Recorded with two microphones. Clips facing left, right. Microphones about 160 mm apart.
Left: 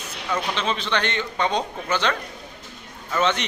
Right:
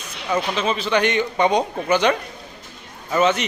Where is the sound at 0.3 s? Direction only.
10° right (ahead or behind).